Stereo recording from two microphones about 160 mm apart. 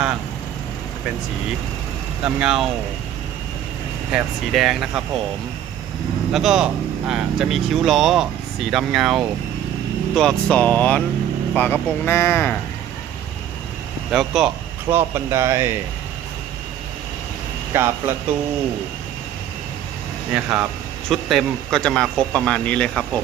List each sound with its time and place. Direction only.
2.2 s speech: 5° right (ahead or behind)
4.1 s speech: centre (ahead or behind)
6.3 s speech: centre (ahead or behind); by 12.5 s 15° left (ahead or behind)
14.1 s speech: centre (ahead or behind)
14.8 s speech: 15° right (ahead or behind)
17.7 s speech: 15° right (ahead or behind)
20.3 s speech: 5° right (ahead or behind)